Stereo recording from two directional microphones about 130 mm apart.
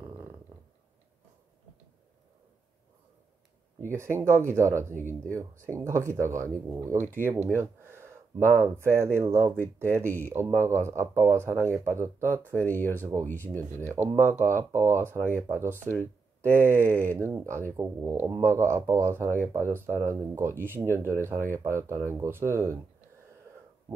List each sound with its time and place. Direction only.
0.0 s a sound: 25° right (ahead or behind)
3.8 s speech: 20° right (ahead or behind)
10.0 s speech: 15° left (ahead or behind)
10.3 s speech: 20° right (ahead or behind)
13.4 s speech: 15° left (ahead or behind)
13.8 s speech: 20° right (ahead or behind)